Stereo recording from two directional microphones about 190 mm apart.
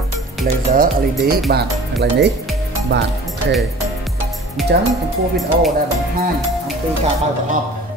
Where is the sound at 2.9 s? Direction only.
65° right (ahead or behind).